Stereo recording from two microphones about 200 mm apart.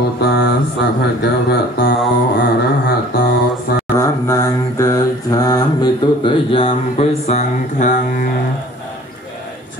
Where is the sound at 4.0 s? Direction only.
15° left (ahead or behind); by 8.3 s 35° left (ahead or behind).